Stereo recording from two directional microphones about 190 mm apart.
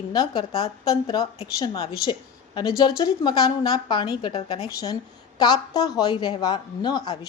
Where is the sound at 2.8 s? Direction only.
25° left (ahead or behind).